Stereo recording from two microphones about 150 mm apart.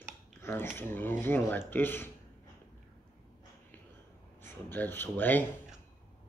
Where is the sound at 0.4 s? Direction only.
15° left (ahead or behind).